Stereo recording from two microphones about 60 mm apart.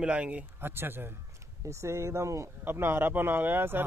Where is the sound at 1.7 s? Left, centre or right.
Right.